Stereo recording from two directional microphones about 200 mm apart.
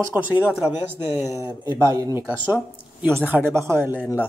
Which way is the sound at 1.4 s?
20° right (ahead or behind).